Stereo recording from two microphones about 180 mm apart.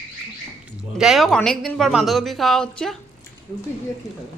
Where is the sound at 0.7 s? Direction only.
5° right (ahead or behind).